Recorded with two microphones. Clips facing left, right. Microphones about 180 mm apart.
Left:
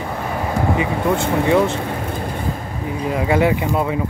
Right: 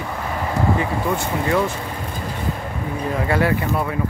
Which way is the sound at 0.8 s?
20° left (ahead or behind).